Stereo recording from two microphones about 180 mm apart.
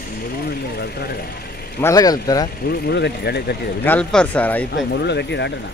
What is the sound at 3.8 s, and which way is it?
Speech, 10° left (ahead or behind).